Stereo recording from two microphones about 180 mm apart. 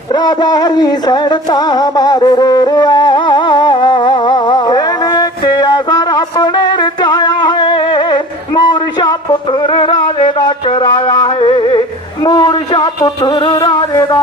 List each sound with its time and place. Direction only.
0.1 s music: 25° left (ahead or behind)